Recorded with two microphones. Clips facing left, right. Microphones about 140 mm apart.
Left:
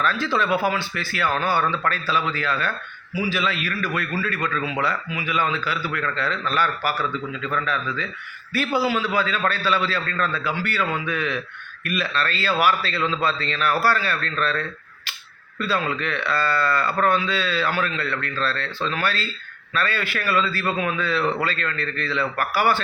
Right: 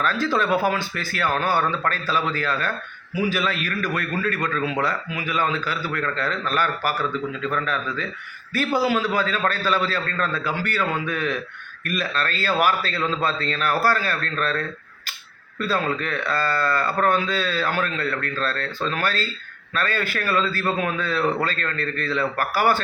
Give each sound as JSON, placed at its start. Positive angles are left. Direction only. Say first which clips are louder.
{"t": 0.0, "sound": "a man's voice", "louder": "right 1 dB", "side_deg": -40}